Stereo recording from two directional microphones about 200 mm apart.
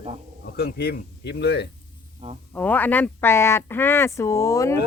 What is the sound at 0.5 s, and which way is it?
Speech, 50° left (ahead or behind).